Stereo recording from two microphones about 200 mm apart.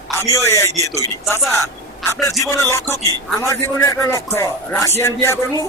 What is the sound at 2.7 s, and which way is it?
Speech, 15° left (ahead or behind).